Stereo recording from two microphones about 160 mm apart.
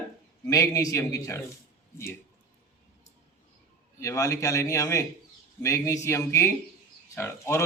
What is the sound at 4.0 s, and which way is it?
A man's voice, 20° left (ahead or behind).